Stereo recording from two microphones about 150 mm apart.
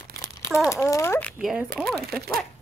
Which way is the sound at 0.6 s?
20° left (ahead or behind).